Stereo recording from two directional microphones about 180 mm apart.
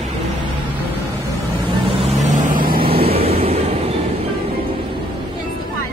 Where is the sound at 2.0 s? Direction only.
45° right (ahead or behind).